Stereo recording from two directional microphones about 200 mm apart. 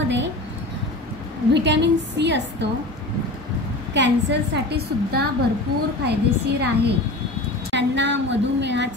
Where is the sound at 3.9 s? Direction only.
60° right (ahead or behind).